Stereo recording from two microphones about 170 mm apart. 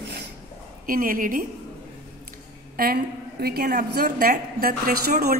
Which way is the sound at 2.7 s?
60° right (ahead or behind).